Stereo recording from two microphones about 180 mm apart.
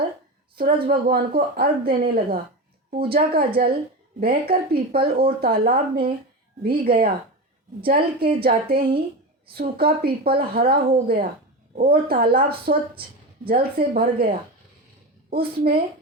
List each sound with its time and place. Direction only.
0.5 s a woman's voice: 55° right (ahead or behind)
15.4 s a woman's voice: 55° right (ahead or behind)